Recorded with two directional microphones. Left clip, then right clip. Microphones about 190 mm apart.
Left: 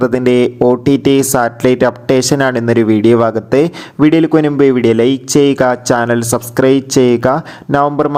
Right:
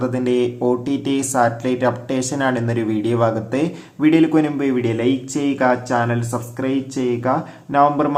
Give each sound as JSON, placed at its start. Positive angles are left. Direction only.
{"t": 0.0, "sound": "speech", "side_deg": 45}